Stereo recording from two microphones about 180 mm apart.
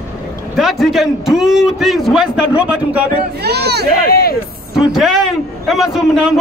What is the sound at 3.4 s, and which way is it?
Speech, 65° right (ahead or behind).